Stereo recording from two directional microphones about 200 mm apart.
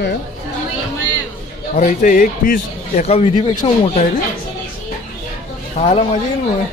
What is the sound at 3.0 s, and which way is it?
Speech, 30° left (ahead or behind).